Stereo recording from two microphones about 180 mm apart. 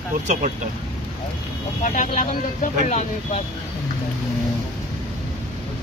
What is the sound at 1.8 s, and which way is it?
Speech, 45° left (ahead or behind).